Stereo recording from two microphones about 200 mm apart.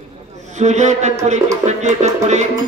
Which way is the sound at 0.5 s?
35° right (ahead or behind).